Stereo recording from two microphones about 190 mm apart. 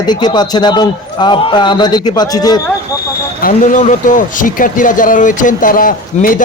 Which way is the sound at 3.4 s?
45° left (ahead or behind).